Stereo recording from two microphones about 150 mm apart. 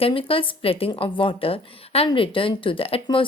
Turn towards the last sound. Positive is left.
turn(degrees=35)  # may be behind; listen again after turning